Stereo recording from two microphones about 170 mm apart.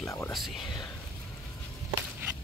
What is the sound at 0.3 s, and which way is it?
Speech, centre (ahead or behind).